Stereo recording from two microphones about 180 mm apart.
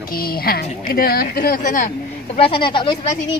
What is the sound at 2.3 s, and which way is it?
Speech, 30° left (ahead or behind).